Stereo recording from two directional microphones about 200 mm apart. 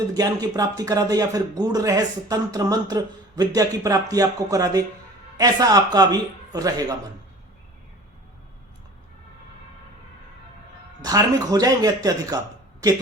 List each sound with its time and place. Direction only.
0.1 s a man's voice: 20° right (ahead or behind)
11.0 s a man's voice: 20° right (ahead or behind)